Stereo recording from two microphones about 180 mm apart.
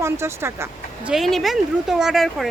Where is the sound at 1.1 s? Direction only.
Centre (ahead or behind).